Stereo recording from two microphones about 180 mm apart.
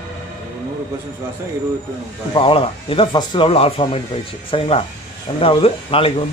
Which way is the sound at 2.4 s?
30° left (ahead or behind).